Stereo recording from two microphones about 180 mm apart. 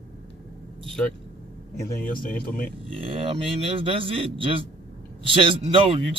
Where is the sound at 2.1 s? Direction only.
50° left (ahead or behind).